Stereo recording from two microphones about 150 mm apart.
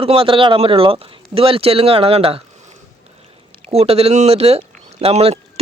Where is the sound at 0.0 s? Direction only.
40° right (ahead or behind).